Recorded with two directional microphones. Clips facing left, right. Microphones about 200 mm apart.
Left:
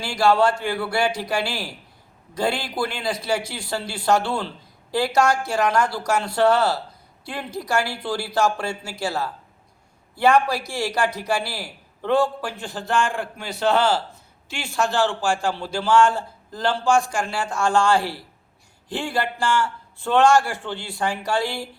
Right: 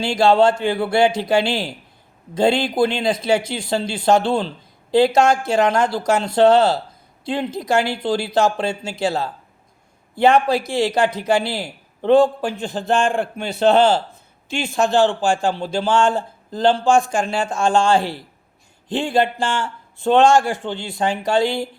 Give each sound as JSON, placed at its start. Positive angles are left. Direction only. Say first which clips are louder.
{"t": 0.0, "sound": "a man's voice", "louder": "right 4 dB", "side_deg": -25}